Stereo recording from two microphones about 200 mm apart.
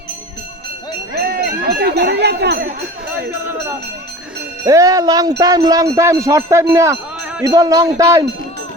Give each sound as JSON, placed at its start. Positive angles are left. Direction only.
{"t": 1.1, "sound": "jingle bell", "side_deg": -50}
{"t": 3.4, "sound": "music", "side_deg": -10}
{"t": 4.6, "sound": "speech", "side_deg": -15}